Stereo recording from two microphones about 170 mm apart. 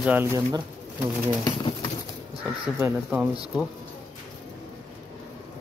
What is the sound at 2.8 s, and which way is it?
Speech, 10° right (ahead or behind).